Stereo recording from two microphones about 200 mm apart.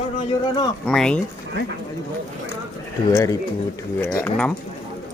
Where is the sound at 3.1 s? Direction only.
15° left (ahead or behind).